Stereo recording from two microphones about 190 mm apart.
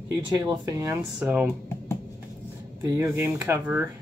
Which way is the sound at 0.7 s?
15° right (ahead or behind).